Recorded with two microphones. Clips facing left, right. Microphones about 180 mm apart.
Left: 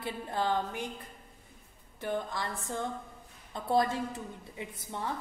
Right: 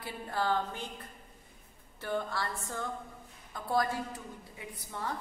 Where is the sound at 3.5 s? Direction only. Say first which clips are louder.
Left 3 dB; 25° left (ahead or behind).